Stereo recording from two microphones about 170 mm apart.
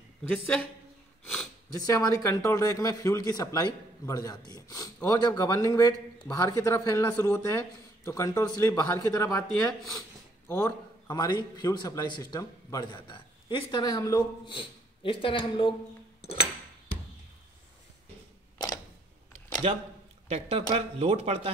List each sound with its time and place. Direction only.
0.2 s speech: 5° left (ahead or behind)
1.2 s sniff: 5° left (ahead or behind)
1.7 s a man's voice: 20° left (ahead or behind)
20.2 s speech: 40° right (ahead or behind)